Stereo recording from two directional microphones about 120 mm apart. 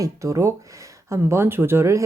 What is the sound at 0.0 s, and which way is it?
Speech, 25° right (ahead or behind).